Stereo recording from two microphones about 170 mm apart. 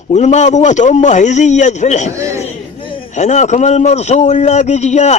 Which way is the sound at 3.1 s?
45° left (ahead or behind).